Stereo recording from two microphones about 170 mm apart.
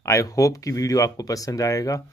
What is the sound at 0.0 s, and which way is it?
Speech, 20° left (ahead or behind).